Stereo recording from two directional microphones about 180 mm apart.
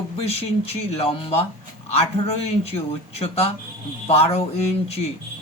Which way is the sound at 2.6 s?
35° left (ahead or behind).